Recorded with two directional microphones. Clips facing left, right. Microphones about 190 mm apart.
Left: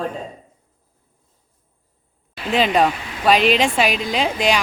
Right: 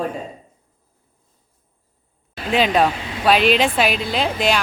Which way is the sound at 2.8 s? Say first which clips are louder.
Even; 5° right (ahead or behind).